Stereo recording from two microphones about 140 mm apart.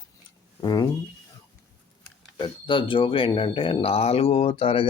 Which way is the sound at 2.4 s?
35° left (ahead or behind).